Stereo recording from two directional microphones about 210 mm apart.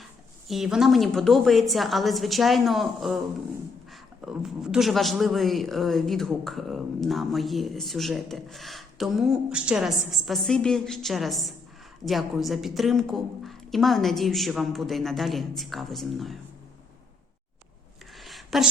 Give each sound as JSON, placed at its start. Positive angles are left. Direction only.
{"t": 0.4, "sound": "a man's voice", "side_deg": 0}
{"t": 4.2, "sound": "a man's voice", "side_deg": -5}
{"t": 18.1, "sound": "a sound", "side_deg": 0}